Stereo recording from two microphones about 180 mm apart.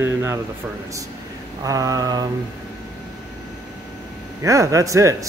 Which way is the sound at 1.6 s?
20° right (ahead or behind).